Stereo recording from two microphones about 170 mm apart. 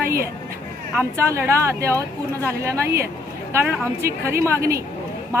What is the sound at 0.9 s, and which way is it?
A woman's voice, 15° right (ahead or behind).